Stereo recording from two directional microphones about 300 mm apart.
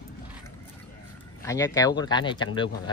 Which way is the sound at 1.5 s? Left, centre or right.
Centre.